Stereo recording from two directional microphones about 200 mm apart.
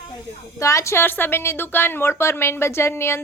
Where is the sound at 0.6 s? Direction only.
15° left (ahead or behind).